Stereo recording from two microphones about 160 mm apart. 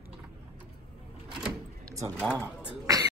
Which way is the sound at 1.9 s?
20° right (ahead or behind).